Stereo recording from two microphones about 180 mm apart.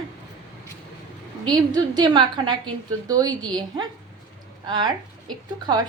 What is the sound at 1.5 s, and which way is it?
A woman's voice, 25° right (ahead or behind).